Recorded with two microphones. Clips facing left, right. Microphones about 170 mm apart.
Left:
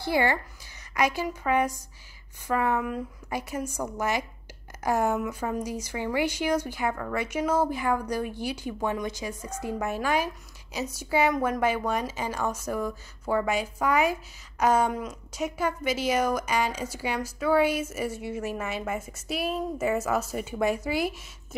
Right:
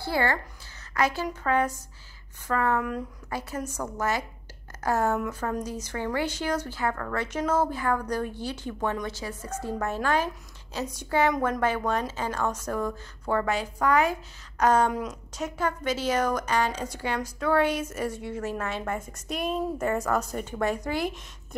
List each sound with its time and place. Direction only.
0.0 s speech: 15° left (ahead or behind)